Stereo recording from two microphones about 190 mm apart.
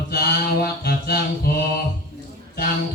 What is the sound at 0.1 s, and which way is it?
Mantra, 55° left (ahead or behind).